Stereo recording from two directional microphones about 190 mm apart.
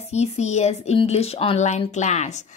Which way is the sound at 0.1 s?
35° left (ahead or behind).